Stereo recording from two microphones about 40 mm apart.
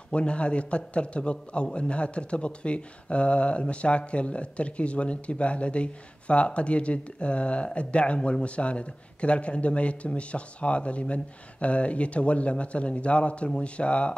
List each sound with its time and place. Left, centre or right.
0.1 s a man's voice: left